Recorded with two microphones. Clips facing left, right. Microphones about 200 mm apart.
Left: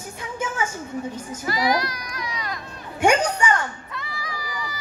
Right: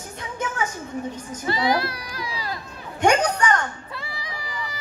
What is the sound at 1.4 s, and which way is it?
A child's voice, 25° right (ahead or behind).